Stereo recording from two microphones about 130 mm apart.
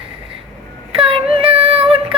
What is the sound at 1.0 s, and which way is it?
Child singing, 45° right (ahead or behind).